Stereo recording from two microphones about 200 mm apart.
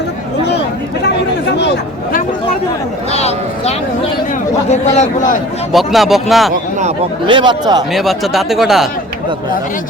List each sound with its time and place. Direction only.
3.1 s a sound: 30° left (ahead or behind)
4.7 s speech: 35° left (ahead or behind)
5.7 s speech: centre (ahead or behind)
6.5 s a sound: 35° right (ahead or behind)
7.3 s speech: 25° right (ahead or behind)
7.9 s speech: centre (ahead or behind)